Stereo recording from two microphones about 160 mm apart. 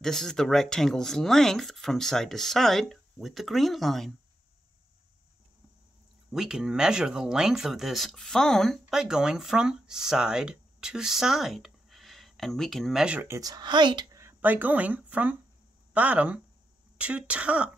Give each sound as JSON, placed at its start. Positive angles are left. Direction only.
{"t": 0.0, "sound": "speech", "side_deg": 5}
{"t": 6.3, "sound": "speech", "side_deg": -5}
{"t": 13.4, "sound": "speech", "side_deg": -25}
{"t": 14.2, "sound": "speech", "side_deg": -10}